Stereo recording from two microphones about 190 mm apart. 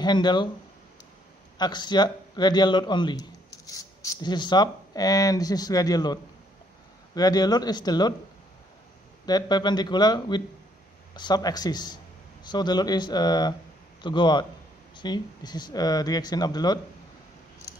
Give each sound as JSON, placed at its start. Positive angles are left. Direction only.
{"t": 0.0, "sound": "a man's voice", "side_deg": 25}
{"t": 1.6, "sound": "a man's voice", "side_deg": 20}
{"t": 7.2, "sound": "a man's voice", "side_deg": 20}
{"t": 9.2, "sound": "a man's voice", "side_deg": 20}